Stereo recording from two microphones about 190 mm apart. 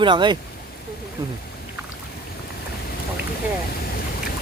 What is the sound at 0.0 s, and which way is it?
Speech, 25° right (ahead or behind).